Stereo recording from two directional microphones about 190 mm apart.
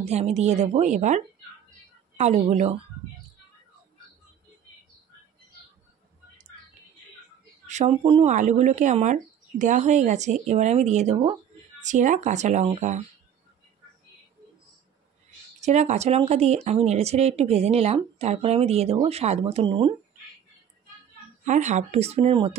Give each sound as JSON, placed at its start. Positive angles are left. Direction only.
{"t": 0.0, "sound": "speech", "side_deg": -35}
{"t": 7.6, "sound": "speech", "side_deg": -35}
{"t": 15.6, "sound": "speech", "side_deg": -35}
{"t": 21.5, "sound": "speech", "side_deg": -40}